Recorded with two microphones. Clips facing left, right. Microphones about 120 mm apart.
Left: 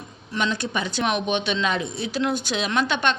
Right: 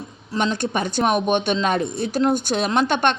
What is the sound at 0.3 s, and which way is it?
A woman's voice, 50° right (ahead or behind).